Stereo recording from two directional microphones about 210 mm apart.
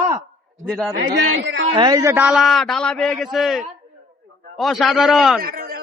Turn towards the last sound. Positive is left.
turn(degrees=-45)  # may be behind; listen again after turning